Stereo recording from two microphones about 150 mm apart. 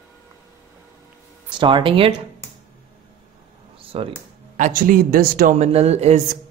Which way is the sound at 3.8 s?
40° right (ahead or behind).